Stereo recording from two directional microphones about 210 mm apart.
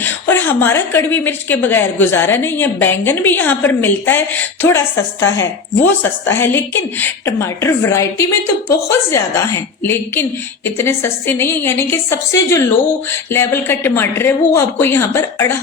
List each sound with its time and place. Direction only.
0.0 s a woman's voice: 10° left (ahead or behind)